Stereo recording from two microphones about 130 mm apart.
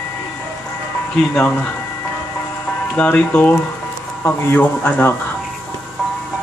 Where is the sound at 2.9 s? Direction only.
10° left (ahead or behind).